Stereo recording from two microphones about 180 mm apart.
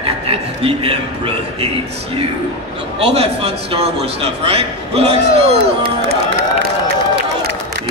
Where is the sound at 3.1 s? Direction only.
35° right (ahead or behind).